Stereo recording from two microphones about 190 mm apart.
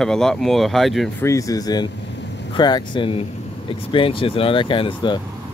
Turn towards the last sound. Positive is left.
turn(degrees=25)  # may be behind; listen again after turning